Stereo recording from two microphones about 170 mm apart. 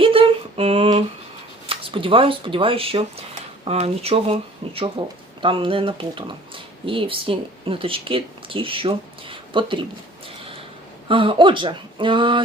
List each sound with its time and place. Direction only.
0.0 s humming: 30° right (ahead or behind)
1.6 s speech: 30° right (ahead or behind)
11.1 s speech: 30° right (ahead or behind)